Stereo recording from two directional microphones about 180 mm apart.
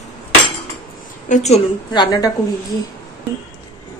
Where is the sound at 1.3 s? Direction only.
40° left (ahead or behind).